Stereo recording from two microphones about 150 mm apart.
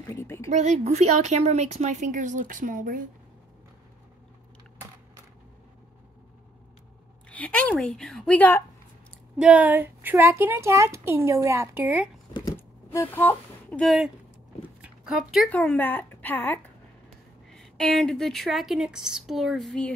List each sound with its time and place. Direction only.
0.1 s a sound: 20° left (ahead or behind)
0.5 s a woman's voice: 50° right (ahead or behind)
7.2 s a woman's voice: 10° left (ahead or behind)
9.4 s a woman's voice: 10° right (ahead or behind)
12.5 s speech: 15° left (ahead or behind)
14.8 s dog: 5° right (ahead or behind)
15.5 s a woman's voice: 10° left (ahead or behind)